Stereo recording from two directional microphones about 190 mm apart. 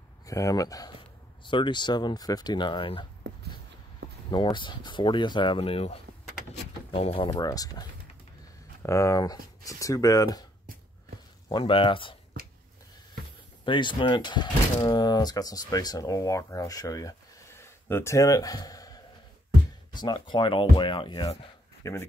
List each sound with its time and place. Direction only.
0.3 s speech: 15° left (ahead or behind)
4.3 s speech: 25° left (ahead or behind)
7.2 s speech: 20° left (ahead or behind)
11.4 s speech: 30° left (ahead or behind)
13.7 s speech: 25° left (ahead or behind)